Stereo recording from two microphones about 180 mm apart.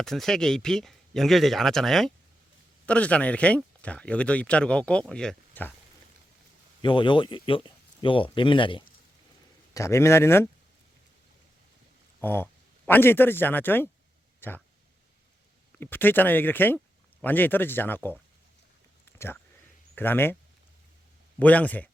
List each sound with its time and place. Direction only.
0.0 s speech: 5° left (ahead or behind)
6.8 s speech: 25° left (ahead or behind)
9.7 s speech: 15° left (ahead or behind)
12.2 s speech: 10° left (ahead or behind)
15.8 s speech: 10° left (ahead or behind)
20.0 s speech: 10° left (ahead or behind)
21.3 s speech: 10° left (ahead or behind)